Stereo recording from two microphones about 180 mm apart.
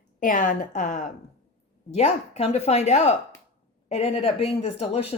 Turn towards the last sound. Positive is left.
turn(degrees=35)  # may be behind; listen again after turning